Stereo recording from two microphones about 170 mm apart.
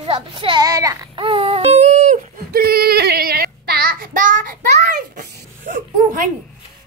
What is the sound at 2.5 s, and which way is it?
Child singing, 60° right (ahead or behind).